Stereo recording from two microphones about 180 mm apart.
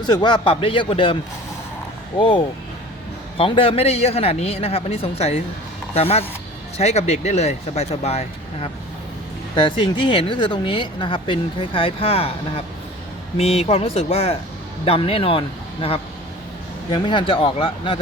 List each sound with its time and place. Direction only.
0.0 s speech: 25° left (ahead or behind)
2.1 s a man's voice: 25° left (ahead or behind)
9.6 s a man's voice: 30° left (ahead or behind)